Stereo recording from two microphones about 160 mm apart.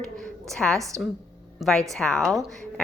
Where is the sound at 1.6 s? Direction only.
Centre (ahead or behind).